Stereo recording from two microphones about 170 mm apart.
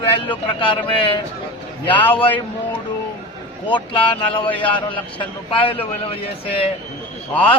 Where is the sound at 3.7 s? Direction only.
30° left (ahead or behind).